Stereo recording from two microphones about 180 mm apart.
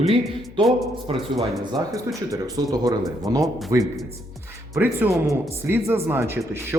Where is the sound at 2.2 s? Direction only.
20° right (ahead or behind).